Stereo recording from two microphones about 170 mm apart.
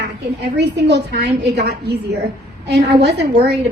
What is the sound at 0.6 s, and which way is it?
A woman's voice, 90° right.